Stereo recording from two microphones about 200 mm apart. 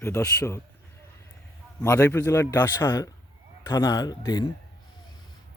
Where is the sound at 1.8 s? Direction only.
15° left (ahead or behind).